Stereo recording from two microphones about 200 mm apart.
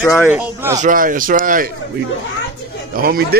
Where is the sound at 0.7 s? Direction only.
40° right (ahead or behind).